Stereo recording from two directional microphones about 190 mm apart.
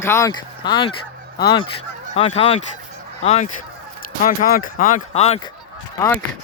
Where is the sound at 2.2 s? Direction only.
30° left (ahead or behind).